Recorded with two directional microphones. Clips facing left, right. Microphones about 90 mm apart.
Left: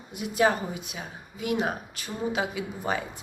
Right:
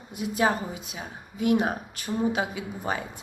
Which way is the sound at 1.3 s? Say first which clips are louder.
Right 4 dB; 40° right (ahead or behind).